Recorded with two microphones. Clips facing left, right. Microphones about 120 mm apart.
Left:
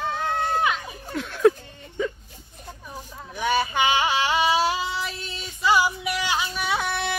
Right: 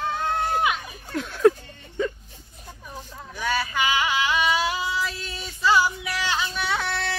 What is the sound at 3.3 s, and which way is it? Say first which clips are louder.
Female singing: left 3 dB; 20° left (ahead or behind).